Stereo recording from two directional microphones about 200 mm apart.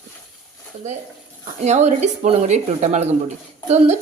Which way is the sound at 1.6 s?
35° right (ahead or behind).